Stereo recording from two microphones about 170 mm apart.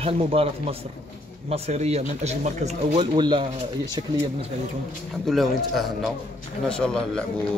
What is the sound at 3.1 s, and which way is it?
Speech, 25° right (ahead or behind).